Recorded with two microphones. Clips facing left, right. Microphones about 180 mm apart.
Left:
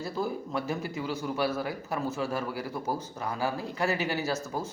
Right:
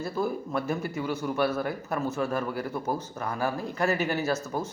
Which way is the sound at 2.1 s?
55° right (ahead or behind).